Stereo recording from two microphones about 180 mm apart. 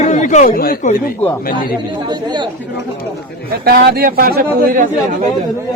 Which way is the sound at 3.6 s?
60° right (ahead or behind).